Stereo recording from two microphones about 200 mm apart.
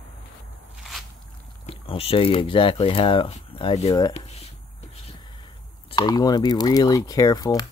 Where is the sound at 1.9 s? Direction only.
30° left (ahead or behind).